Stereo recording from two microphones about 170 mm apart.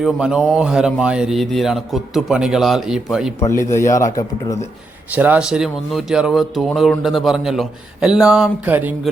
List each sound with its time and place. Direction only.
0.0 s speech: 5° right (ahead or behind)
3.4 s speech: 15° left (ahead or behind)
5.1 s speech: 10° right (ahead or behind)